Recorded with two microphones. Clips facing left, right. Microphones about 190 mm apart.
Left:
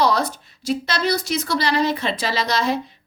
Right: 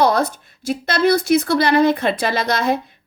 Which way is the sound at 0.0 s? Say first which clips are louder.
Right 3 dB; 55° right (ahead or behind).